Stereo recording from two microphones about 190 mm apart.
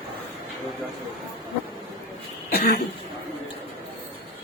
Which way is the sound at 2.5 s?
50° left (ahead or behind).